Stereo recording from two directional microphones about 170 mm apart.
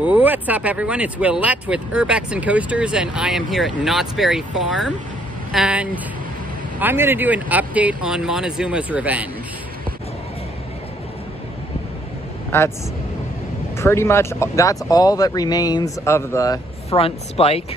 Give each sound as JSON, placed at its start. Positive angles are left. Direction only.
{"t": 0.0, "sound": "speech", "side_deg": -10}
{"t": 12.4, "sound": "speech", "side_deg": 15}
{"t": 13.7, "sound": "speech", "side_deg": 15}
{"t": 16.9, "sound": "a woman's voice", "side_deg": 35}